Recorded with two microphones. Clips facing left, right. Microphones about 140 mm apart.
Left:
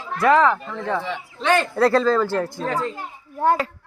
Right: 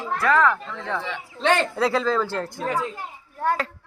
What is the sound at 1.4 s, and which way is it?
Speech, 25° right (ahead or behind).